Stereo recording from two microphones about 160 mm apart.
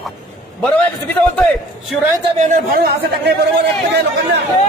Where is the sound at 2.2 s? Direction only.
50° right (ahead or behind).